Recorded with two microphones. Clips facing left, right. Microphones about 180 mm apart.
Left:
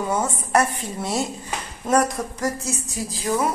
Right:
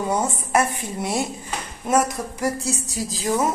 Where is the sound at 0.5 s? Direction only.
15° right (ahead or behind).